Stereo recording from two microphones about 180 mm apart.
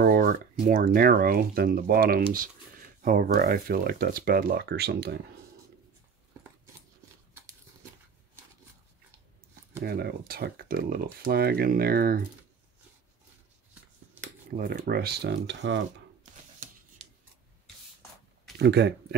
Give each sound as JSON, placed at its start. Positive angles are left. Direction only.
{"t": 0.0, "sound": "speech", "side_deg": -55}
{"t": 9.8, "sound": "speech", "side_deg": -60}
{"t": 14.6, "sound": "speech", "side_deg": -60}
{"t": 18.6, "sound": "speech", "side_deg": -70}